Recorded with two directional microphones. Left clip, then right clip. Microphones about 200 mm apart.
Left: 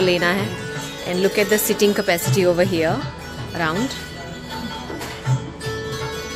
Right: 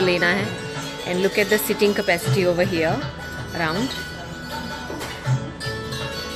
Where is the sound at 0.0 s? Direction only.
15° left (ahead or behind).